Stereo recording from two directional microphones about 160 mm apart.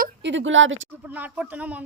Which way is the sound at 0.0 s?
90° right.